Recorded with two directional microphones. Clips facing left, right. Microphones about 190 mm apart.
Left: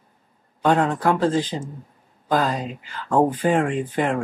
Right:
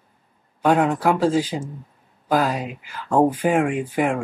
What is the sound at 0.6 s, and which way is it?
Speech, 10° right (ahead or behind).